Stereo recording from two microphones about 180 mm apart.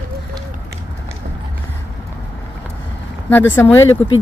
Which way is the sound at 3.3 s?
10° left (ahead or behind).